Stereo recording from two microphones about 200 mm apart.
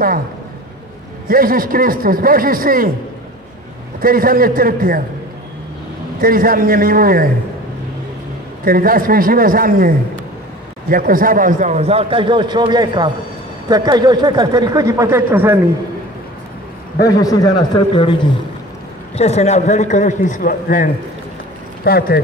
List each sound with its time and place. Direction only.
1.3 s a man's voice: 45° right (ahead or behind)
4.0 s a man's voice: 45° right (ahead or behind)
6.2 s a man's voice: 45° right (ahead or behind)
8.6 s a man's voice: 45° right (ahead or behind); by 15.6 s 10° right (ahead or behind)
17.1 s a man's voice: 15° left (ahead or behind); by 22.2 s 50° left (ahead or behind)